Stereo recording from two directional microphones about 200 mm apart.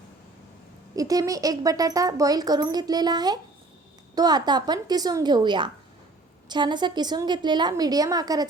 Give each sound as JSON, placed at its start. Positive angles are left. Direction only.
{"t": 0.9, "sound": "a woman's voice", "side_deg": -15}